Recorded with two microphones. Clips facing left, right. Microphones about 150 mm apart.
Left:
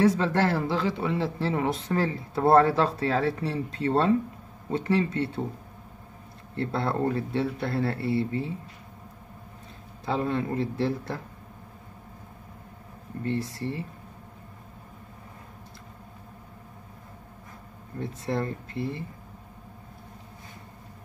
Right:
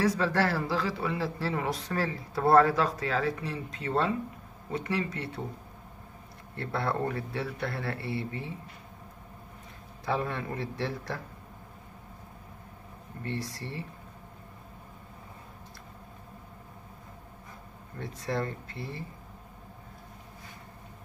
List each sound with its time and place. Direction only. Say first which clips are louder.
0.0 s speech: left 4 dB; 25° left (ahead or behind)
6.5 s speech: left 3 dB; 25° left (ahead or behind)
10.0 s speech: left 4 dB; 25° left (ahead or behind)
13.3 s speech: left 6 dB; 25° left (ahead or behind)
18.0 s speech: left 3 dB; 25° left (ahead or behind)